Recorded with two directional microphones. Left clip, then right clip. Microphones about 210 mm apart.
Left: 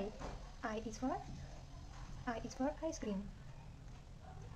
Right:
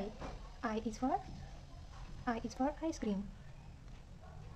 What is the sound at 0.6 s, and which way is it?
Speech, 15° right (ahead or behind).